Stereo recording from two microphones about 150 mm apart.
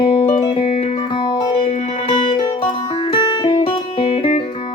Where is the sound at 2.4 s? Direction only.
25° left (ahead or behind).